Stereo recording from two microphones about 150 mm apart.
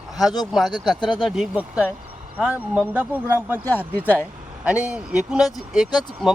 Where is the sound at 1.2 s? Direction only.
Centre (ahead or behind).